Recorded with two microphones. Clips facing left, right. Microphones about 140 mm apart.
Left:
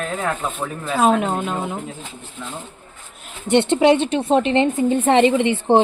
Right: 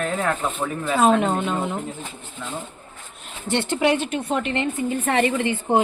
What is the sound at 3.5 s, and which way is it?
A woman's voice, 25° left (ahead or behind).